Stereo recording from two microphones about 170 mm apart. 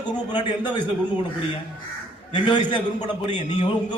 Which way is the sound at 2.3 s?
25° left (ahead or behind).